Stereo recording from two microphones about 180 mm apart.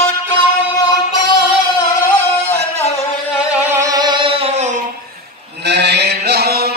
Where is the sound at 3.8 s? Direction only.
20° right (ahead or behind); by 4.8 s 40° right (ahead or behind).